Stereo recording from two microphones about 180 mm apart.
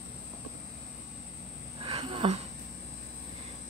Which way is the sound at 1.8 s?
30° right (ahead or behind).